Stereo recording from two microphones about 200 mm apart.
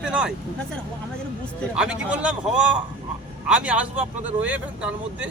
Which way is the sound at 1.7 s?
5° right (ahead or behind).